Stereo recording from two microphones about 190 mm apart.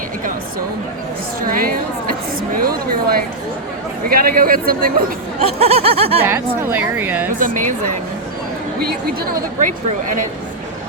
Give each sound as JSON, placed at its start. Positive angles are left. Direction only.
{"t": 1.4, "sound": "a woman's voice", "side_deg": -50}
{"t": 5.5, "sound": "a sound", "side_deg": -30}
{"t": 6.2, "sound": "a woman's voice", "side_deg": -10}
{"t": 7.3, "sound": "a woman's voice", "side_deg": -45}
{"t": 9.6, "sound": "a woman's voice", "side_deg": -40}